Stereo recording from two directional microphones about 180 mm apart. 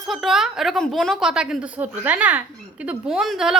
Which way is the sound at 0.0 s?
Centre (ahead or behind).